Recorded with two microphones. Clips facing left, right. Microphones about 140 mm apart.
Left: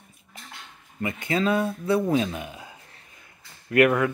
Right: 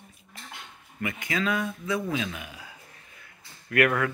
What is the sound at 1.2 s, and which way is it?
Speech, 30° left (ahead or behind).